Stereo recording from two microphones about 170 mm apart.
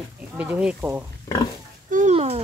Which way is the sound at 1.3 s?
20° left (ahead or behind).